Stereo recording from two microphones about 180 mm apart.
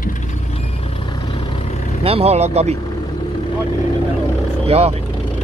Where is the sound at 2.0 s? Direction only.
35° right (ahead or behind).